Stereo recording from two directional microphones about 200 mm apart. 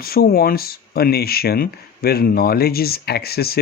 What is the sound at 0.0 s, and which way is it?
Speech, 50° left (ahead or behind).